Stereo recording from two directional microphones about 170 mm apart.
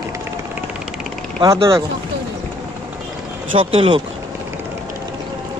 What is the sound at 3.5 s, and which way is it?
Speech, 30° right (ahead or behind).